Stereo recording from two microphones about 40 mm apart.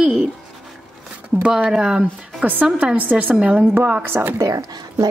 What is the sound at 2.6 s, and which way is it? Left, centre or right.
A woman's voice, right.